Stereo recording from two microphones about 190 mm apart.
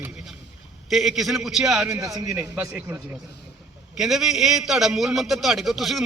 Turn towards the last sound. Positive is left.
turn(degrees=0)  # may be behind; listen again after turning